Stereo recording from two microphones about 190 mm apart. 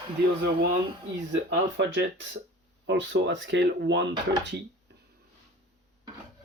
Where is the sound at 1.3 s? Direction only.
70° right (ahead or behind).